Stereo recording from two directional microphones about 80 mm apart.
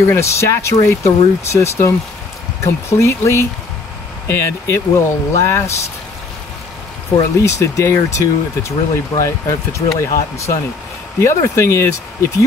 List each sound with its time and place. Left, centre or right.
0.0 s speech: left
7.3 s speech: left